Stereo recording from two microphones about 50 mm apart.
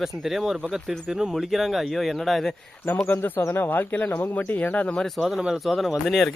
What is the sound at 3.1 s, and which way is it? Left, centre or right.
Speech, left.